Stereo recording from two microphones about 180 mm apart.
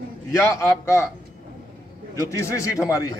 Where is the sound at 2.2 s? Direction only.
15° left (ahead or behind).